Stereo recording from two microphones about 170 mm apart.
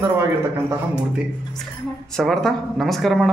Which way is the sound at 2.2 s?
Centre (ahead or behind).